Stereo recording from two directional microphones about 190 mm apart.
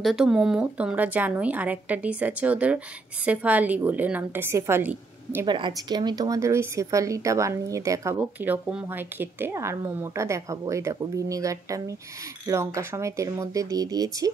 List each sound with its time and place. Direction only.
0.0 s speech: centre (ahead or behind); by 14.3 s 20° right (ahead or behind)